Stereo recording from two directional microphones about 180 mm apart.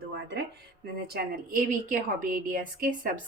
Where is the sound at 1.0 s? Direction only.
60° right (ahead or behind).